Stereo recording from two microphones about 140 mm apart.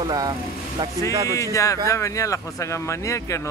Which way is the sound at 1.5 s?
20° left (ahead or behind).